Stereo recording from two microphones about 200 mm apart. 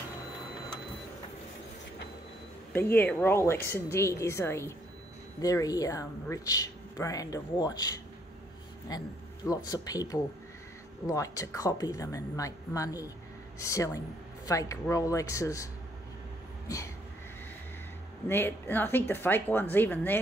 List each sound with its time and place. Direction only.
2.7 s speech: 10° left (ahead or behind)
16.6 s a sound: 15° left (ahead or behind)
18.3 s speech: 10° left (ahead or behind)